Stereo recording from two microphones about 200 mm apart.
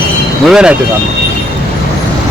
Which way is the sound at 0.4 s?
5° right (ahead or behind).